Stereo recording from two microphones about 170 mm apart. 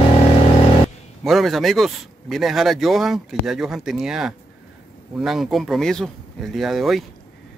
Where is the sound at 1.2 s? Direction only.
Centre (ahead or behind).